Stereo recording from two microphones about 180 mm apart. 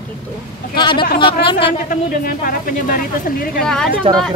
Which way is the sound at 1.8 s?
50° left (ahead or behind).